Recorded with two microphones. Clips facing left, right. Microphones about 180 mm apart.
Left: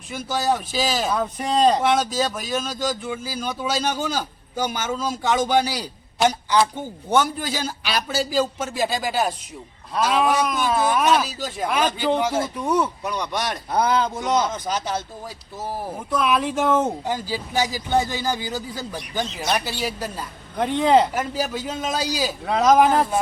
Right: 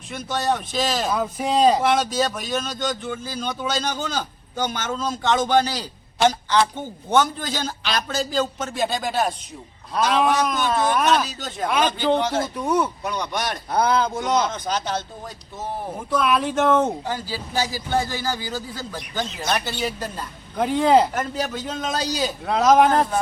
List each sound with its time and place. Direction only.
0.1 s speech: 5° left (ahead or behind)
17.1 s speech: 15° left (ahead or behind)